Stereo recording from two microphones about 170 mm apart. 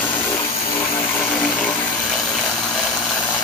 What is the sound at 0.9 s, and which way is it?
Vehicle, 10° left (ahead or behind).